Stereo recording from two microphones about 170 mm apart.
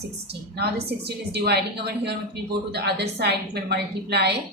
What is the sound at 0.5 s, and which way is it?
A woman's voice, 70° right (ahead or behind).